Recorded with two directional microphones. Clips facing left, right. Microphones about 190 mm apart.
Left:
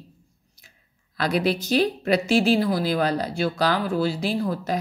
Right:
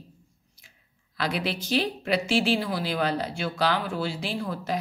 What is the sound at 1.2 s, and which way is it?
Speech, 45° left (ahead or behind).